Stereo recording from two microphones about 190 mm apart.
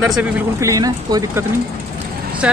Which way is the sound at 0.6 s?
15° right (ahead or behind).